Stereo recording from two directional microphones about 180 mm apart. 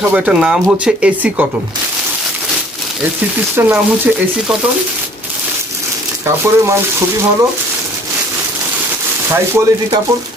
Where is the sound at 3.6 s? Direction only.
15° right (ahead or behind).